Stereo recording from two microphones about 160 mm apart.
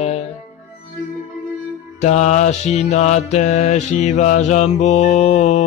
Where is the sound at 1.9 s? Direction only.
45° left (ahead or behind).